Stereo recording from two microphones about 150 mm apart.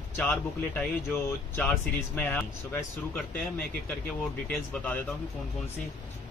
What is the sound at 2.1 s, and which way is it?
Speech, 15° left (ahead or behind).